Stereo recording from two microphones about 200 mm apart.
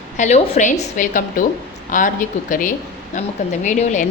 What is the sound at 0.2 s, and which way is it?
A woman's voice, 35° left (ahead or behind).